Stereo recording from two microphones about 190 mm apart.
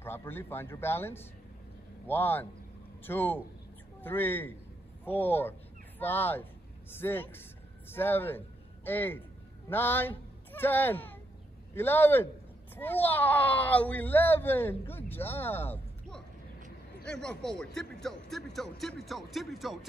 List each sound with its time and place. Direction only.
0.0 s a man's voice: 10° left (ahead or behind)